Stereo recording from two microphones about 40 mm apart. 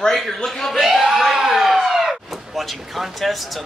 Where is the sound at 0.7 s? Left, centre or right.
Centre.